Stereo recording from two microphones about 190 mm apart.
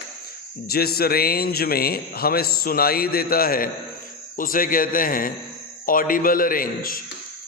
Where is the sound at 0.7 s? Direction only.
55° left (ahead or behind).